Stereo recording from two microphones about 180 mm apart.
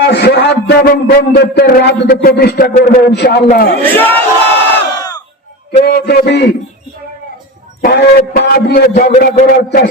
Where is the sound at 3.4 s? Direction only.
55° left (ahead or behind).